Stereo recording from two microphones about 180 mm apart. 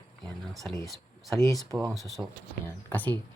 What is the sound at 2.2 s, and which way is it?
Speech, 5° right (ahead or behind).